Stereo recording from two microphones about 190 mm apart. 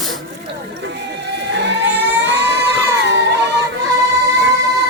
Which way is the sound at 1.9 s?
65° right (ahead or behind).